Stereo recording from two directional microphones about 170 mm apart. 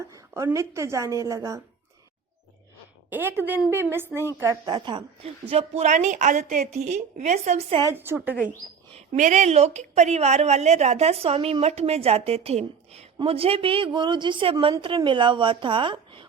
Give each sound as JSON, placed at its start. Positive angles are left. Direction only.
{"t": 0.3, "sound": "a woman's voice", "side_deg": -20}
{"t": 3.1, "sound": "a woman's voice", "side_deg": -10}
{"t": 7.8, "sound": "a woman's voice", "side_deg": -15}
{"t": 9.0, "sound": "a woman's voice", "side_deg": -45}